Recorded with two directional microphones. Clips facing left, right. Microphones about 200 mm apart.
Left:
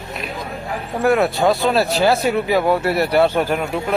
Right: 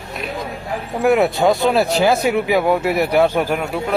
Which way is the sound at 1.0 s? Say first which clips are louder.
Right 1 dB; 20° right (ahead or behind).